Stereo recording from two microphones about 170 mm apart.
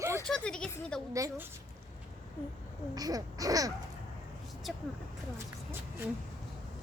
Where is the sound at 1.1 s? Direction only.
20° right (ahead or behind).